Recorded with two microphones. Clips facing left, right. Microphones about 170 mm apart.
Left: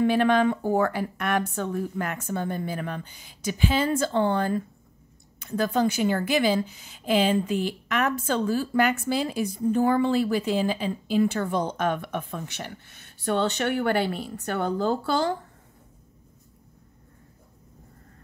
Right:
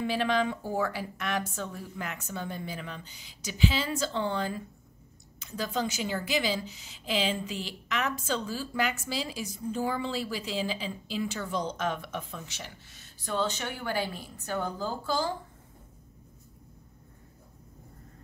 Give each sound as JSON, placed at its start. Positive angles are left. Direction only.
{"t": 0.0, "sound": "a woman's voice", "side_deg": 55}